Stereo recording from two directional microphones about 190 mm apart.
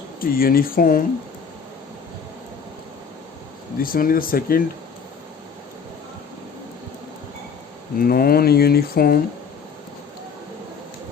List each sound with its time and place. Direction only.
0.2 s speech: 50° left (ahead or behind)
3.8 s speech: 50° left (ahead or behind)
7.9 s speech: 50° left (ahead or behind)